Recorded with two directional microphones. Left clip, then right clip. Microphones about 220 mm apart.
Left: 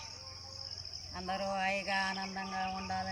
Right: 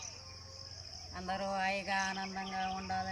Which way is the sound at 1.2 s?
Centre (ahead or behind).